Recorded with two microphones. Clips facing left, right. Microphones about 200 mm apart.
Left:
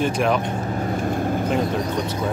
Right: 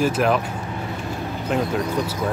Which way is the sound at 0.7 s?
45° left (ahead or behind).